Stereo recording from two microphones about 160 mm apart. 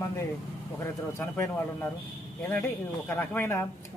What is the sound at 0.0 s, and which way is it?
A man's voice, 15° left (ahead or behind).